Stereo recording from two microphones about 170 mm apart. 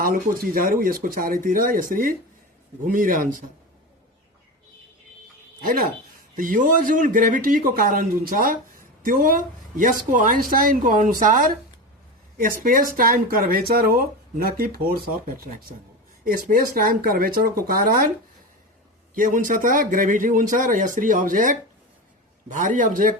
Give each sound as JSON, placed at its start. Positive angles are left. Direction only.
{"t": 0.0, "sound": "speech", "side_deg": -60}
{"t": 5.6, "sound": "a man's voice", "side_deg": -55}
{"t": 19.1, "sound": "a man's voice", "side_deg": -55}